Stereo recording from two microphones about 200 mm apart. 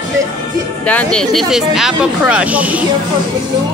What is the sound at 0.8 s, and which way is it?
Speech, 5° left (ahead or behind).